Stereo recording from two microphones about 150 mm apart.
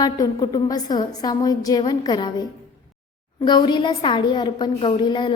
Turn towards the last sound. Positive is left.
turn(degrees=30)  # may be behind; listen again after turning